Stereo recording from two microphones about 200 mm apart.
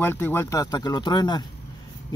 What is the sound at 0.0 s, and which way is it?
Speech, 10° left (ahead or behind).